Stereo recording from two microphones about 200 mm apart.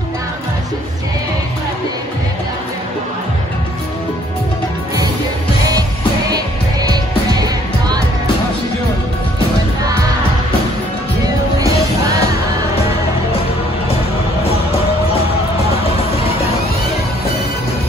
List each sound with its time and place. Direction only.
6.3 s music: 20° right (ahead or behind)
11.6 s music: 15° right (ahead or behind)